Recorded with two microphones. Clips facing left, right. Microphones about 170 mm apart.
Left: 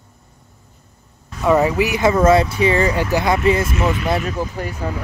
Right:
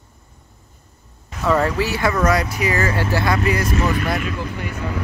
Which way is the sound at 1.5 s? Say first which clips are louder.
Left 3 dB; 15° left (ahead or behind).